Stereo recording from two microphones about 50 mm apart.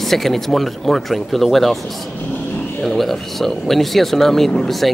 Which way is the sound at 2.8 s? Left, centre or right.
Centre.